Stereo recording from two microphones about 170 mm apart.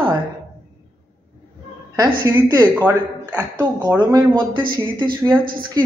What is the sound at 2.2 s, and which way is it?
Speech, 25° right (ahead or behind).